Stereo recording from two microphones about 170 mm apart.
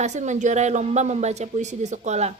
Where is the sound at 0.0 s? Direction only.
45° right (ahead or behind).